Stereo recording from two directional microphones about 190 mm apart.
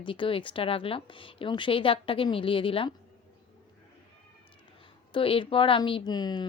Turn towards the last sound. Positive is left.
turn(degrees=20)  # may be behind; listen again after turning